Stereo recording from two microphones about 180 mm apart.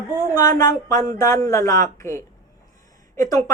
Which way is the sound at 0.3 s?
20° left (ahead or behind).